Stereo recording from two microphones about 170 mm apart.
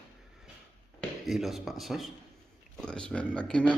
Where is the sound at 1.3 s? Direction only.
Centre (ahead or behind).